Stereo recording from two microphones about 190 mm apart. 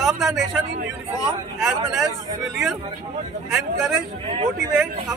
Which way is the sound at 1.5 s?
Centre (ahead or behind).